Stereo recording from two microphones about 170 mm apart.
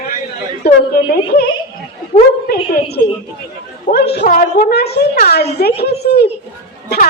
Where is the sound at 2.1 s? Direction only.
40° left (ahead or behind).